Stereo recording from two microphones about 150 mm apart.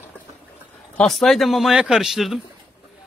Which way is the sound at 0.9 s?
Centre (ahead or behind).